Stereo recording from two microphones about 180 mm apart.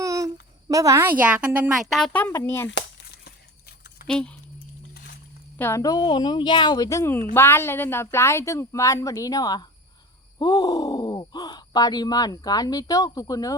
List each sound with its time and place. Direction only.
0.0 s a sound: 20° right (ahead or behind)
0.7 s a woman's voice: 15° right (ahead or behind); by 2.2 s centre (ahead or behind)
2.2 s a woman's voice: 15° left (ahead or behind)
3.2 s a sound: 60° left (ahead or behind)
4.0 s speech: 5° left (ahead or behind)
5.5 s a woman's voice: 15° left (ahead or behind)